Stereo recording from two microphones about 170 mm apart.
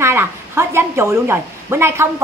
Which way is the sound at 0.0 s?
15° right (ahead or behind).